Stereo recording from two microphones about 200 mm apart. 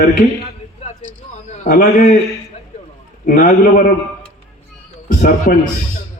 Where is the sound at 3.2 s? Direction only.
40° left (ahead or behind).